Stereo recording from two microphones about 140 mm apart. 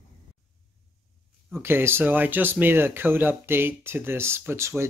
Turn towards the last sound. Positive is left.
turn(degrees=-20)  # may be behind; listen again after turning